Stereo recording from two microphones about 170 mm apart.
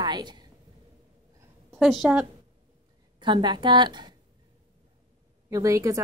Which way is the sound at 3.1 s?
25° right (ahead or behind).